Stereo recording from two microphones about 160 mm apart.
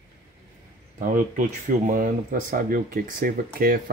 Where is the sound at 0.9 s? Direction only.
55° right (ahead or behind).